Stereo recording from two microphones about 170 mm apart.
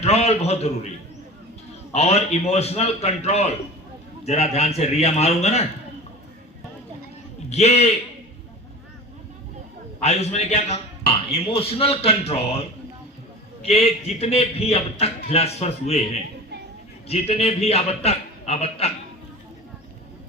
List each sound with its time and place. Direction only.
0.0 s a man's voice: 40° left (ahead or behind)
1.9 s speech: 40° left (ahead or behind)
7.5 s speech: 40° left (ahead or behind)
10.0 s speech: 40° left (ahead or behind)
17.1 s speech: 35° left (ahead or behind)